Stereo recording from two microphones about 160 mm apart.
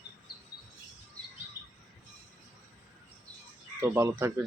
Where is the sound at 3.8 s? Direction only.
15° right (ahead or behind).